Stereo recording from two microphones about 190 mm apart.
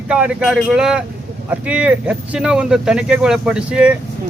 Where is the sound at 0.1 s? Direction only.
5° right (ahead or behind).